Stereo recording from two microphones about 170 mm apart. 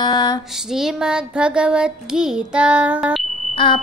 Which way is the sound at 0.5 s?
5° right (ahead or behind).